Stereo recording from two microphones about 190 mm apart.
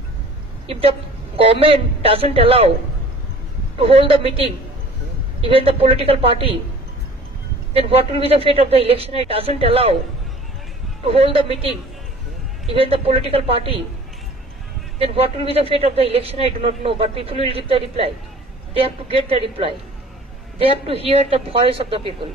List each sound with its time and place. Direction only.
0.7 s a man's voice: 30° right (ahead or behind)
3.7 s a man's voice: 30° right (ahead or behind)
7.7 s a man's voice: 30° right (ahead or behind)
11.1 s a man's voice: 30° right (ahead or behind)
15.0 s a man's voice: 30° right (ahead or behind)